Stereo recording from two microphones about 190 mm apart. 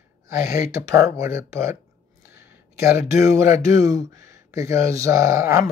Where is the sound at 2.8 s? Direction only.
15° right (ahead or behind).